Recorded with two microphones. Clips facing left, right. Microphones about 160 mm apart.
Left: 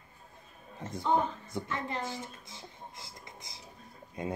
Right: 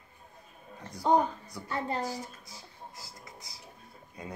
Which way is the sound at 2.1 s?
25° left (ahead or behind).